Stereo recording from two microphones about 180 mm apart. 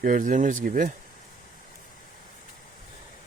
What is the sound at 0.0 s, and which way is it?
Speech, 45° right (ahead or behind).